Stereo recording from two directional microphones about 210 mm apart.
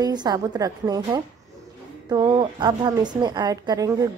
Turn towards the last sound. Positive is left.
turn(degrees=-15)  # may be behind; listen again after turning